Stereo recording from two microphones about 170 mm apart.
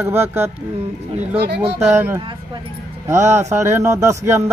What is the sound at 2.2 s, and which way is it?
Speech, 30° right (ahead or behind).